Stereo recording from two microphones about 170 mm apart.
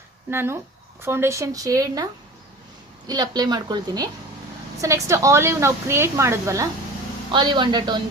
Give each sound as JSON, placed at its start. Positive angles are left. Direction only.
{"t": 0.3, "sound": "a woman's voice", "side_deg": -15}
{"t": 3.1, "sound": "a woman's voice", "side_deg": -25}
{"t": 7.3, "sound": "speech", "side_deg": -25}